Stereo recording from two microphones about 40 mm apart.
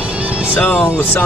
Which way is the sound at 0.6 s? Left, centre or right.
Left.